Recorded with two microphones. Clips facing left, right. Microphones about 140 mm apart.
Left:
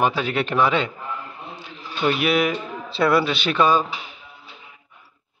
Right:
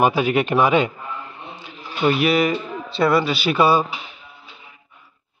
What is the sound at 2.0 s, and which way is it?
A man's voice, centre (ahead or behind).